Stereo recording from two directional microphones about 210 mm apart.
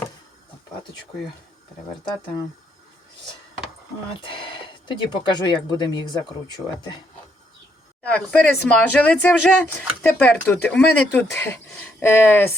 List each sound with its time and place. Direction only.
4.1 s speech: 25° left (ahead or behind)
8.1 s speech: 5° left (ahead or behind)